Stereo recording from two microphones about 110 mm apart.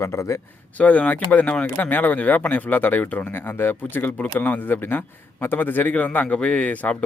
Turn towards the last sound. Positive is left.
turn(degrees=10)  # may be behind; listen again after turning